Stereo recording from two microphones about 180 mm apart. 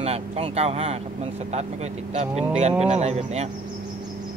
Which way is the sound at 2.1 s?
35° right (ahead or behind).